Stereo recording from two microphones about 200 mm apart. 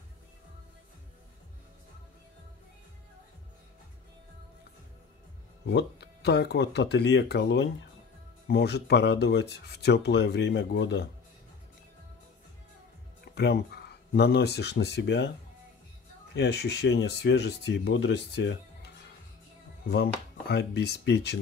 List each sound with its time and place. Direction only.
5.7 s speech: 55° left (ahead or behind)
13.3 s speech: 55° left (ahead or behind)
16.3 s speech: 55° left (ahead or behind)
19.9 s speech: 55° left (ahead or behind)